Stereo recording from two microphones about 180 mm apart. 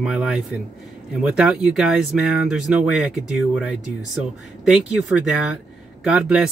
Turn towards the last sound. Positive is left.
turn(degrees=-5)  # may be behind; listen again after turning